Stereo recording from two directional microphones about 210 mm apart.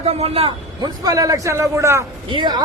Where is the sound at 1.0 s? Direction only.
15° right (ahead or behind).